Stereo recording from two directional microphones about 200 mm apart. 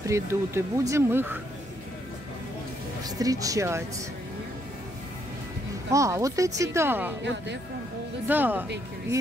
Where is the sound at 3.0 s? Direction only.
20° right (ahead or behind).